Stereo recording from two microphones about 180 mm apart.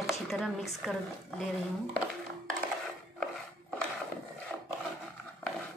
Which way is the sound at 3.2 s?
5° left (ahead or behind).